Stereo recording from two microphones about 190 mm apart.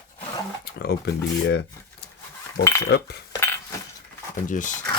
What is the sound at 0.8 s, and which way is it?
Speech, 60° left (ahead or behind).